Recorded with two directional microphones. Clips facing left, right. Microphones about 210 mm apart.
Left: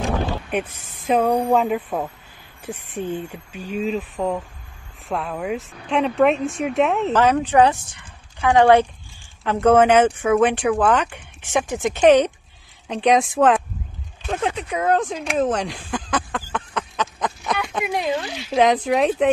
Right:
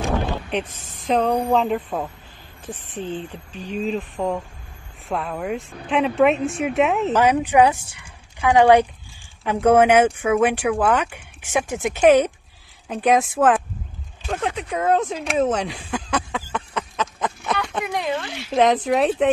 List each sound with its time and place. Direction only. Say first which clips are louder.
0.5 s speech: left 1 dB; 10° left (ahead or behind)
7.2 s speech: even; 10° right (ahead or behind)
16.2 s a sound: even; 5° right (ahead or behind)
17.6 s speech: left 1 dB; 10° left (ahead or behind)